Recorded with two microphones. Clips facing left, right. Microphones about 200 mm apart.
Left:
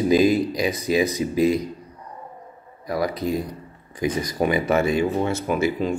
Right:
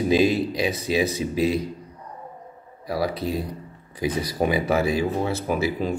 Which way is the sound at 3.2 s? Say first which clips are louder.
Left 2 dB; 30° right (ahead or behind).